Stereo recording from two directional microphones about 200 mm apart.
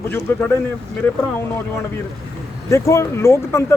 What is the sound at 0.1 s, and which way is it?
Speech, 10° left (ahead or behind).